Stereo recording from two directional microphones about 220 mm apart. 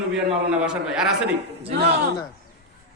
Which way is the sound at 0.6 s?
5° right (ahead or behind).